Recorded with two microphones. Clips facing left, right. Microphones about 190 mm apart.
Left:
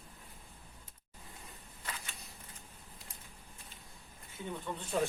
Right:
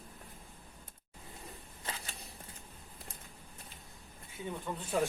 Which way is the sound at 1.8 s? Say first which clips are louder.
Right 2 dB; 35° right (ahead or behind).